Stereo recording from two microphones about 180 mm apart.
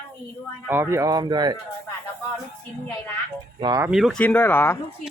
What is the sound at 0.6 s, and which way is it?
Speech, 15° right (ahead or behind).